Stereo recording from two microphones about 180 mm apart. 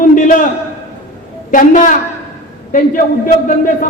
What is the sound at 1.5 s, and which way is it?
A man's voice, 45° left (ahead or behind).